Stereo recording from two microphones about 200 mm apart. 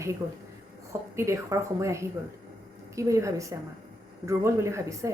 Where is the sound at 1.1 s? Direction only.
15° right (ahead or behind).